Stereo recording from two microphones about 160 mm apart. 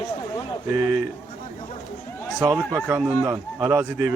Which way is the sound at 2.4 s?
20° right (ahead or behind).